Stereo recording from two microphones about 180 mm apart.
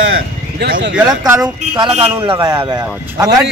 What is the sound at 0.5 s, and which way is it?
Speech, 70° right (ahead or behind).